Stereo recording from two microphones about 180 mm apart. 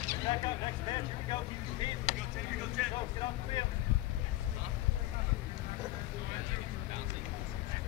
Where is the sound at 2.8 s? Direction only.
Centre (ahead or behind).